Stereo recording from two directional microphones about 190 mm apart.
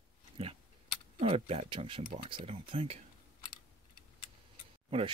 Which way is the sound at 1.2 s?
30° right (ahead or behind).